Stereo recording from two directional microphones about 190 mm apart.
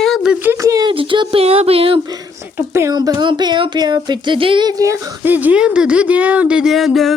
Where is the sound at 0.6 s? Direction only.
20° right (ahead or behind).